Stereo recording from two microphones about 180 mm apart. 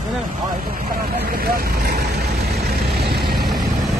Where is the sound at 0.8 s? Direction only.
55° right (ahead or behind).